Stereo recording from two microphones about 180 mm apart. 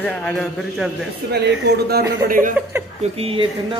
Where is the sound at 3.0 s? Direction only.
35° right (ahead or behind).